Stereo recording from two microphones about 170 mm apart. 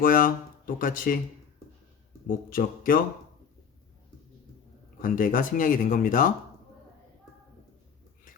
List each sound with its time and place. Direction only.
0.0 s speech: 55° left (ahead or behind)
2.5 s speech: 55° left (ahead or behind)
5.0 s speech: 55° left (ahead or behind)